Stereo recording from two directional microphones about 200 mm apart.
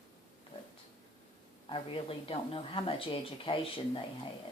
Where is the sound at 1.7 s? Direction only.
25° left (ahead or behind).